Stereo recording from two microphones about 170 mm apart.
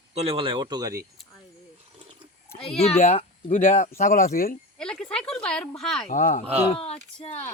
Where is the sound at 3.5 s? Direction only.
50° left (ahead or behind).